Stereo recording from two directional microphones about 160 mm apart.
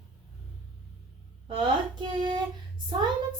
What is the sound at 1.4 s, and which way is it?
Female singing, 30° right (ahead or behind).